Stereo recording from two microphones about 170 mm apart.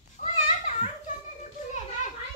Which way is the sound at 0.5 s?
40° left (ahead or behind).